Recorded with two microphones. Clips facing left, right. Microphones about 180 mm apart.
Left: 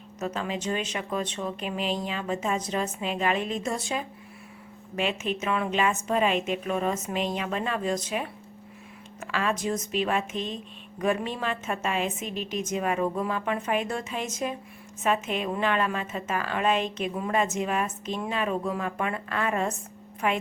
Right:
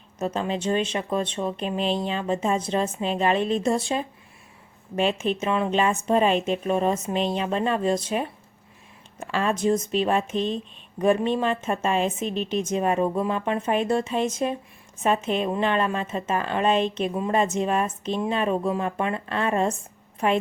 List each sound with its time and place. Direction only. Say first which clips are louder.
0.2 s a woman's voice: right 4 dB; 30° right (ahead or behind)